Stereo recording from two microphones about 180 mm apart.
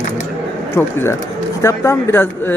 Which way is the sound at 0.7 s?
15° left (ahead or behind).